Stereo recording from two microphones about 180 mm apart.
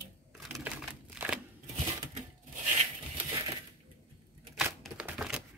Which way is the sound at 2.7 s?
35° right (ahead or behind).